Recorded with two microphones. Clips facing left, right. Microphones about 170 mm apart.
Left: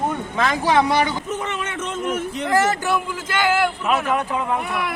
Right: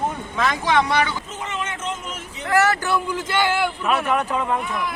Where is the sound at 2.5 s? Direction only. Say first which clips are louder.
Right 1 dB; 20° left (ahead or behind).